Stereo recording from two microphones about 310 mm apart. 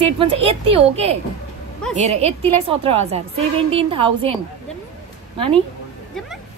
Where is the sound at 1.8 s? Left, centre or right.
Centre.